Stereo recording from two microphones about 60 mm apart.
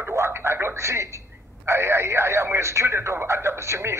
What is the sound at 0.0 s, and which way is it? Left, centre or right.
Telephone, right.